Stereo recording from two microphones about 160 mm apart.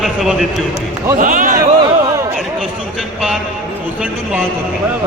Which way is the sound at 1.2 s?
60° right (ahead or behind).